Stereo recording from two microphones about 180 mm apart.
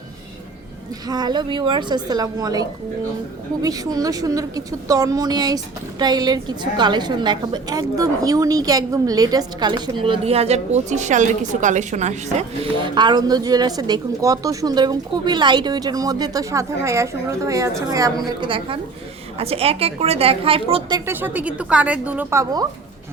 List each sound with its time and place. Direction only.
1.0 s a woman's voice: 20° right (ahead or behind); by 12.5 s 40° right (ahead or behind)
12.8 s a woman's voice: 25° right (ahead or behind)
21.1 s a woman's voice: 10° right (ahead or behind)